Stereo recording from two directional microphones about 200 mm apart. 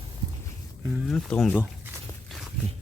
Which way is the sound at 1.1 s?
5° left (ahead or behind).